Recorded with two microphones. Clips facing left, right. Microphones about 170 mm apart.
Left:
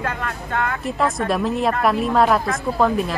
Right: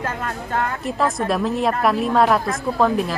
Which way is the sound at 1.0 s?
Centre (ahead or behind).